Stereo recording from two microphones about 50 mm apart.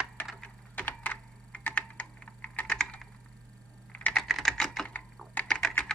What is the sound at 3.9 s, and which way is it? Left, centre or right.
Typing, left.